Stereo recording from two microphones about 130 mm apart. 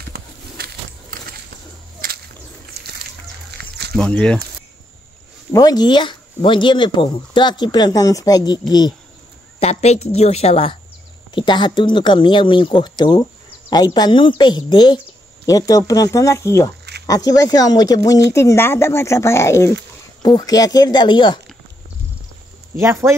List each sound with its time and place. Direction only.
2.0 s whip: 90° right
3.9 s speech: 5° left (ahead or behind)
5.5 s speech: 30° left (ahead or behind)
9.6 s a woman's voice: 55° left (ahead or behind)
11.3 s speech: 35° left (ahead or behind); by 19.7 s 20° left (ahead or behind)
20.2 s speech: 30° left (ahead or behind)
22.8 s speech: 20° right (ahead or behind)